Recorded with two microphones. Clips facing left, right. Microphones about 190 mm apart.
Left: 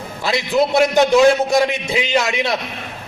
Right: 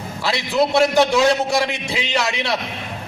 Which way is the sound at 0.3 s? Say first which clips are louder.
Left 2 dB; 15° left (ahead or behind).